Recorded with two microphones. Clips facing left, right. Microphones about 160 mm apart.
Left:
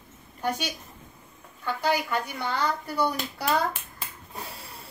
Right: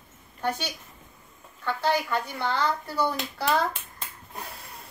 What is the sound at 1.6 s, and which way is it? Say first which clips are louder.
Chuckle: right 1 dB; 10° left (ahead or behind).